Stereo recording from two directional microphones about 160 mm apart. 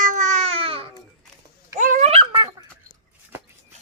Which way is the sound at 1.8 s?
55° right (ahead or behind).